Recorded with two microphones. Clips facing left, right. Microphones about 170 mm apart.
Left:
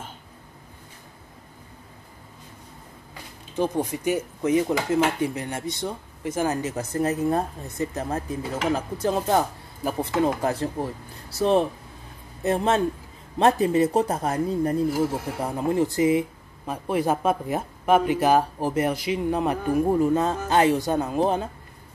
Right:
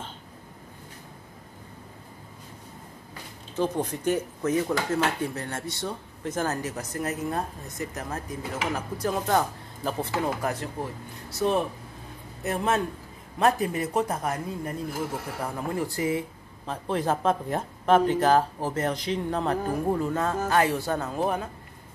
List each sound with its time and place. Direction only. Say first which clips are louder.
3.5 s speech: left 2 dB; 10° left (ahead or behind)
6.8 s speech: left 6 dB; 30° left (ahead or behind)
10.4 s speech: left 5 dB; 30° left (ahead or behind)